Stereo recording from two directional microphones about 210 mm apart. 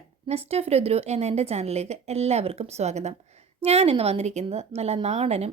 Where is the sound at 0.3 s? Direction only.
30° right (ahead or behind).